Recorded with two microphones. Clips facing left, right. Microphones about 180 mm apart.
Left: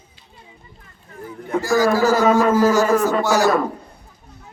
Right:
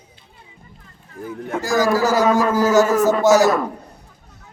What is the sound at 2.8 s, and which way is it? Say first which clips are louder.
Speech: right 2 dB; 45° right (ahead or behind).